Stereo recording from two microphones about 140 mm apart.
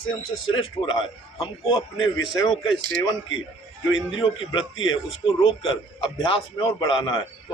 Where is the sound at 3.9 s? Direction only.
35° left (ahead or behind).